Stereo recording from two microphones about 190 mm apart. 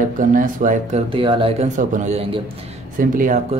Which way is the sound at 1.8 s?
40° right (ahead or behind).